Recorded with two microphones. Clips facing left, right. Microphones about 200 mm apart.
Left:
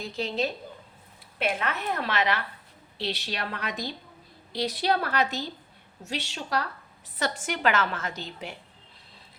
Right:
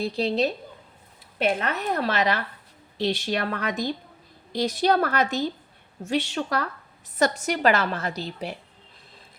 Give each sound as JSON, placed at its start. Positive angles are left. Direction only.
{"t": 0.0, "sound": "a woman's voice", "side_deg": -35}
{"t": 7.2, "sound": "a woman's voice", "side_deg": -40}